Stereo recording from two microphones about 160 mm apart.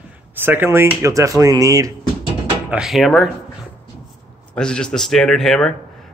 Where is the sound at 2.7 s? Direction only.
Centre (ahead or behind).